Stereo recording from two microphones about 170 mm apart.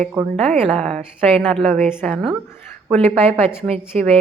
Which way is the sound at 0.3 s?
35° right (ahead or behind).